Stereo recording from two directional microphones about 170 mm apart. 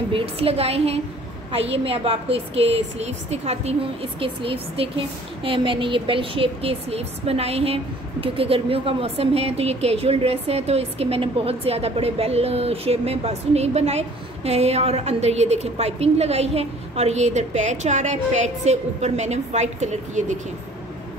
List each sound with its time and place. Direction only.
0.1 s a woman's voice: 35° right (ahead or behind)